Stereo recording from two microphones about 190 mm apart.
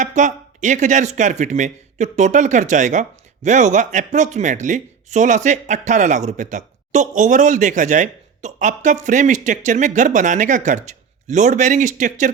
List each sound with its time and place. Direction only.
0.0 s speech: 40° right (ahead or behind)